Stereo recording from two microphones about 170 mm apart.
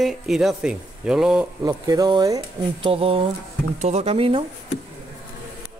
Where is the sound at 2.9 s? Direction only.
35° right (ahead or behind).